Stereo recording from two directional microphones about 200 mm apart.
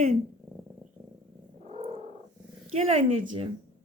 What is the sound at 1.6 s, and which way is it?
Purr, 35° right (ahead or behind).